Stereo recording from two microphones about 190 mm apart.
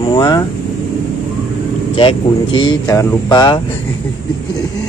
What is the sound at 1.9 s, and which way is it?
Speech, 25° left (ahead or behind).